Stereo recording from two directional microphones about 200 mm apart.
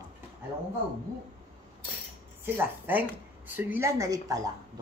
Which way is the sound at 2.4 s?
10° right (ahead or behind).